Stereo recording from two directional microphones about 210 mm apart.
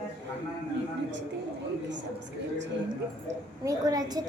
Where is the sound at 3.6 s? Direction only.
15° right (ahead or behind).